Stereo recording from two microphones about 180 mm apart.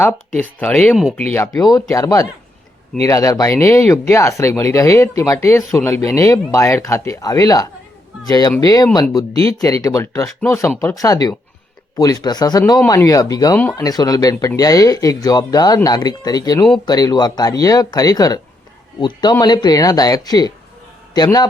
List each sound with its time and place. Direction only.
0.6 s speech: 10° left (ahead or behind)
9.3 s speech: 35° right (ahead or behind)
9.8 s a man's voice: 15° left (ahead or behind)